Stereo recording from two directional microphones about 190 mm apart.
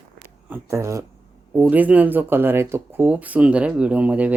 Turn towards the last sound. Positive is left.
turn(degrees=-5)  # may be behind; listen again after turning